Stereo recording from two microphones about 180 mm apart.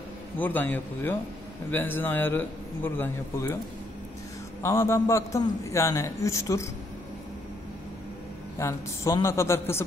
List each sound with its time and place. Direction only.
0.4 s a man's voice: 10° left (ahead or behind)
4.6 s a man's voice: 15° left (ahead or behind)
8.5 s a man's voice: 15° left (ahead or behind)